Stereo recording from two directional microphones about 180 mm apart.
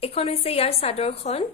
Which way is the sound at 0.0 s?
35° left (ahead or behind).